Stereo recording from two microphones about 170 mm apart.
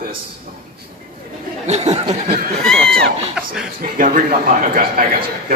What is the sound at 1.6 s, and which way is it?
Speech, 40° right (ahead or behind).